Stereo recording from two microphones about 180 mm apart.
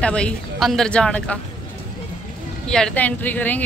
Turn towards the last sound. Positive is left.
turn(degrees=10)  # may be behind; listen again after turning